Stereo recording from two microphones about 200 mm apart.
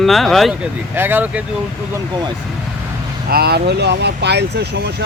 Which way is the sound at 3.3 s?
50° right (ahead or behind).